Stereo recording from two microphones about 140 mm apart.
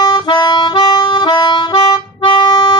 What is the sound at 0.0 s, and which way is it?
Harmonica, 30° left (ahead or behind).